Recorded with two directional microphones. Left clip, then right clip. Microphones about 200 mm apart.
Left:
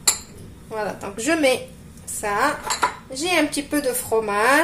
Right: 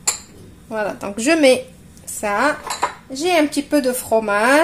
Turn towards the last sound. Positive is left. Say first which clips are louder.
# right 3 dB
turn(degrees=-45)  # may be behind; listen again after turning